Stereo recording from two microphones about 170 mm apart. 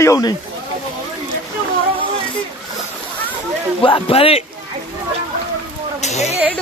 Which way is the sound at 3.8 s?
30° left (ahead or behind).